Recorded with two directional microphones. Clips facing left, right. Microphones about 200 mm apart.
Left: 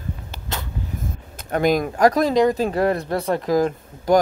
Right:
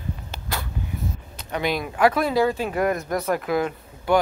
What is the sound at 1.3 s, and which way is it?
Speech, 45° left (ahead or behind).